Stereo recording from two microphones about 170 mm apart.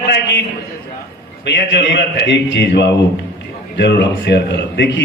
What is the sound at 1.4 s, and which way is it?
A man's voice, 90° left.